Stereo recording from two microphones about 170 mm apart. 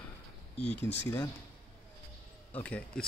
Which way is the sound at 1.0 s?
15° left (ahead or behind).